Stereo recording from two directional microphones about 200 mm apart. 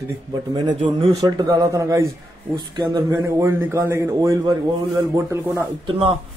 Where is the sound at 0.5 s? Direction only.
20° right (ahead or behind).